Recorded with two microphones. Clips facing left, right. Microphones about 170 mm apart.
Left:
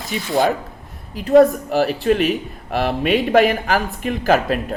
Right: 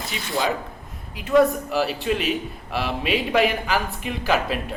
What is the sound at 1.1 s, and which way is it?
Speech, 45° left (ahead or behind).